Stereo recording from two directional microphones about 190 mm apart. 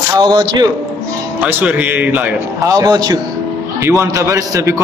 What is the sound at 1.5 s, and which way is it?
A man's voice, 10° right (ahead or behind).